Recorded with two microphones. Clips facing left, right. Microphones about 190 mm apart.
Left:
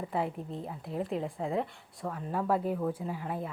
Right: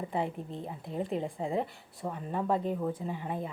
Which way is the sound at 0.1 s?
Centre (ahead or behind).